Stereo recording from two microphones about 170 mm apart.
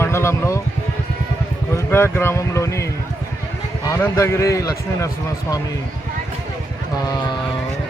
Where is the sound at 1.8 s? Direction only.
15° left (ahead or behind).